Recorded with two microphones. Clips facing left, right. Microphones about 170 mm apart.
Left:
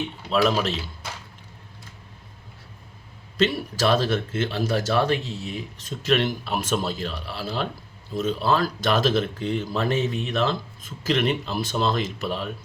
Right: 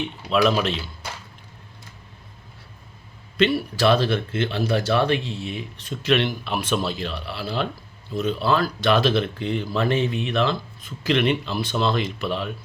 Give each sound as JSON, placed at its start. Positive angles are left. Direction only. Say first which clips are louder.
{"t": 3.3, "sound": "speech", "louder": "right 3 dB", "side_deg": 40}